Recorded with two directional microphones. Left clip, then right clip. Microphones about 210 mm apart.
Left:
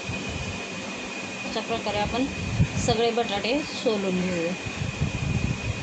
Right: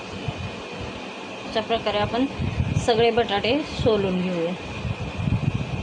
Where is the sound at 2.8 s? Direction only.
25° right (ahead or behind).